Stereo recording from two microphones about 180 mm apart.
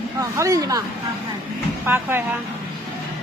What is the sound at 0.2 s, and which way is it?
Speech, 20° right (ahead or behind).